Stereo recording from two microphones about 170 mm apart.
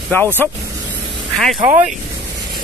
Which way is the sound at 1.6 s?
45° right (ahead or behind).